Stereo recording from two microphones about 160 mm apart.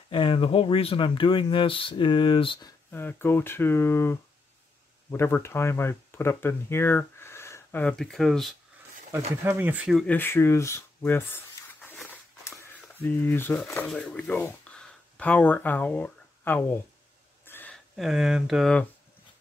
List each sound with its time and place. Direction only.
0.1 s speech: 35° left (ahead or behind)
2.9 s speech: 15° left (ahead or behind)
9.1 s speech: 15° right (ahead or behind)
10.0 s speech: 15° left (ahead or behind)
13.0 s speech: 15° left (ahead or behind)
17.5 s a sound: 10° left (ahead or behind)
17.9 s speech: centre (ahead or behind)